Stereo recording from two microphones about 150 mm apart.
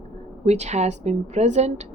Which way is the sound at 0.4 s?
50° right (ahead or behind).